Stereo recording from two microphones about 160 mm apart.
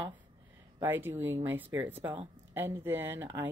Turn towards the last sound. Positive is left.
turn(degrees=-15)  # may be behind; listen again after turning